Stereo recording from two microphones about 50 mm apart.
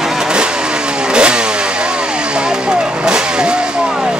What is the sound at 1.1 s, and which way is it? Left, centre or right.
Vehicle, centre.